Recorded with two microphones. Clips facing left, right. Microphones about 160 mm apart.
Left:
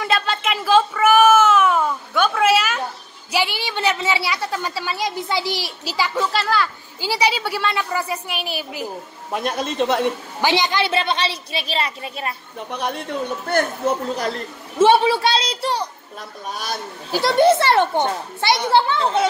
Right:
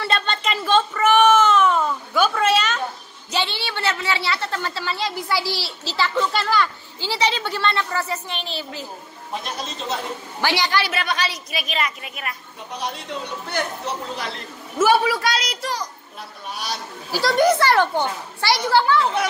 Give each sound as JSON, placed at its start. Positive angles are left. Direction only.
{"t": 0.0, "sound": "a sound", "side_deg": 5}
{"t": 2.2, "sound": "a woman's voice", "side_deg": 5}
{"t": 9.3, "sound": "a man's voice", "side_deg": 55}
{"t": 10.4, "sound": "a woman's voice", "side_deg": 20}
{"t": 12.7, "sound": "speech", "side_deg": 55}
{"t": 14.8, "sound": "a woman's voice", "side_deg": 30}
{"t": 16.5, "sound": "speech", "side_deg": 50}
{"t": 17.1, "sound": "a woman's voice", "side_deg": 25}